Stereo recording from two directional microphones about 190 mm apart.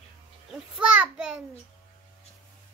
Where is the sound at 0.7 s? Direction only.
5° right (ahead or behind).